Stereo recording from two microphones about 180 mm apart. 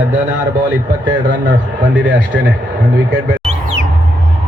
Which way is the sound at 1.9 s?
90° right.